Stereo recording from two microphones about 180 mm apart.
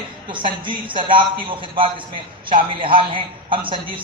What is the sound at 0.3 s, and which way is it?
A man's voice, 25° right (ahead or behind).